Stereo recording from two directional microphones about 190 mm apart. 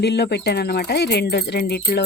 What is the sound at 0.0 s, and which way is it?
Speech, 60° left (ahead or behind).